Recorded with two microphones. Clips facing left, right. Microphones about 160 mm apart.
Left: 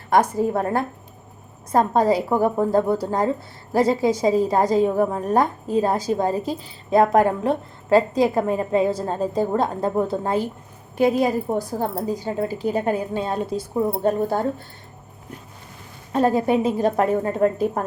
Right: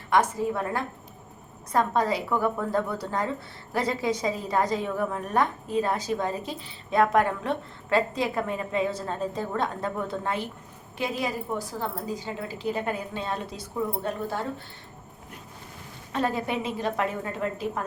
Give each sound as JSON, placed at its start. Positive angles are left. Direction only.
{"t": 0.1, "sound": "a woman's voice", "side_deg": 40}
{"t": 16.1, "sound": "speech", "side_deg": 40}